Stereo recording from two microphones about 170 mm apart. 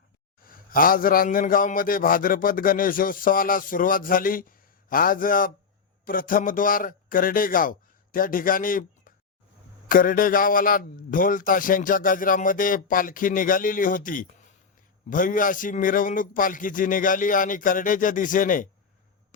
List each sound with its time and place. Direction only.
0.4 s a man's voice: 55° left (ahead or behind)